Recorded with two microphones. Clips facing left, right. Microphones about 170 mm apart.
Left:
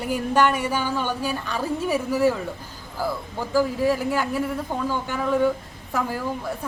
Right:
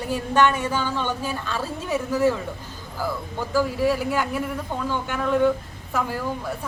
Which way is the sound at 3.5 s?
15° left (ahead or behind).